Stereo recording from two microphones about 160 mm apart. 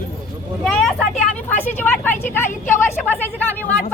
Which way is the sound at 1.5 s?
10° left (ahead or behind).